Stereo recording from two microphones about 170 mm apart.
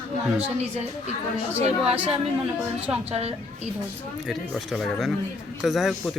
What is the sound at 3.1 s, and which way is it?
Speech, 40° right (ahead or behind).